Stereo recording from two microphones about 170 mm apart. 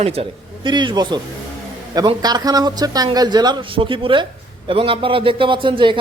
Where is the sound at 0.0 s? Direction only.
30° right (ahead or behind).